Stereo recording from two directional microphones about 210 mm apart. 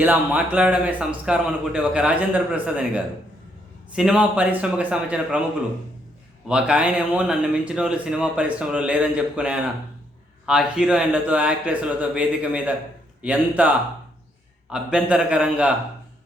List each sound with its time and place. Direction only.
0.0 s speech: 5° right (ahead or behind)
6.5 s a man's voice: 5° right (ahead or behind)